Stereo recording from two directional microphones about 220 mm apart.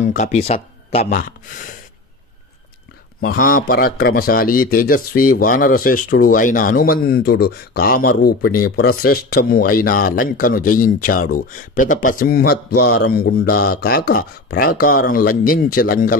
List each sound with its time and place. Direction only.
0.0 s speech: 35° left (ahead or behind)
3.2 s a man's voice: 40° left (ahead or behind)